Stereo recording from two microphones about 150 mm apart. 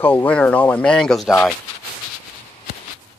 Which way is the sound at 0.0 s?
10° left (ahead or behind).